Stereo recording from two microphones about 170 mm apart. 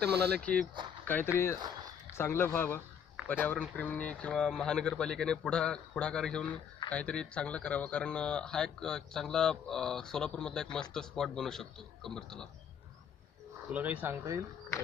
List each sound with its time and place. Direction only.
0.1 s speech: 75° right (ahead or behind)
0.4 s speech: 5° left (ahead or behind)
13.7 s speech: 10° right (ahead or behind)